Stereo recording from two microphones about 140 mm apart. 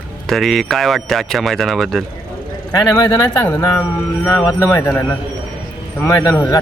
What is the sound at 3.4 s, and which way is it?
Speech, 15° left (ahead or behind).